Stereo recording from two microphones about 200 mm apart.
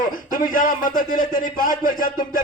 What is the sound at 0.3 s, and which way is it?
A man's voice, 45° left (ahead or behind).